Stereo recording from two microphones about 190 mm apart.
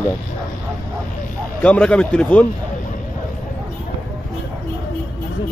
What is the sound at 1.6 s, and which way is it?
Speech, 5° left (ahead or behind).